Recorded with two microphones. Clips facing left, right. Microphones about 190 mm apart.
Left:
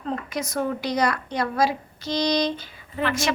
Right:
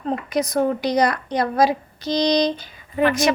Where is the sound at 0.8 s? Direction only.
15° right (ahead or behind).